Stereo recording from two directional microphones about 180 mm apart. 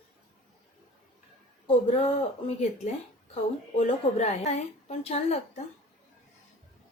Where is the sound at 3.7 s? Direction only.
35° left (ahead or behind).